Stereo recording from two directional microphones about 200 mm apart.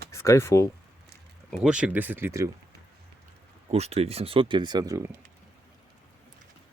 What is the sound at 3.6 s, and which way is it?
Speech, 30° right (ahead or behind).